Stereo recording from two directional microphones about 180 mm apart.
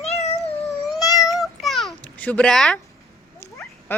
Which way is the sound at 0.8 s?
Centre (ahead or behind).